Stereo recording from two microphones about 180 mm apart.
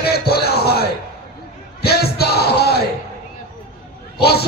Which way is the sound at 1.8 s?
60° left (ahead or behind).